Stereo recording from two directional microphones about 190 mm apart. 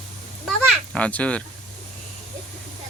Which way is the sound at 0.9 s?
5° left (ahead or behind).